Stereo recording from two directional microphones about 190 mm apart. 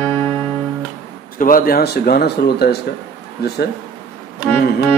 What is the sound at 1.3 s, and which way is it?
Speech, 45° left (ahead or behind).